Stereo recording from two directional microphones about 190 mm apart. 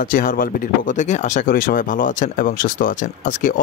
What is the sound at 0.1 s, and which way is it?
Speech, 45° left (ahead or behind).